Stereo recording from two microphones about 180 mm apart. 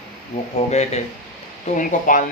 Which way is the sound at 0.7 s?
40° left (ahead or behind).